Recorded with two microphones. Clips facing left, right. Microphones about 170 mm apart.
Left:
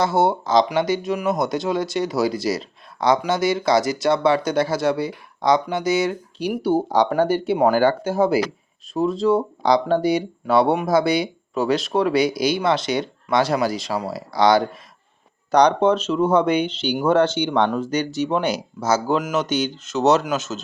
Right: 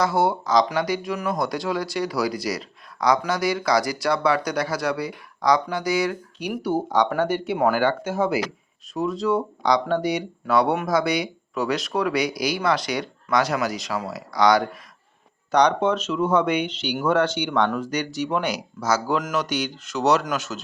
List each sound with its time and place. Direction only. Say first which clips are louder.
0.0 s speech: left 2 dB; 25° left (ahead or behind)